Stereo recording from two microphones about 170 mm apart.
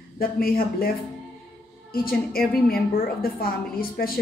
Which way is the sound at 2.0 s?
60° left (ahead or behind).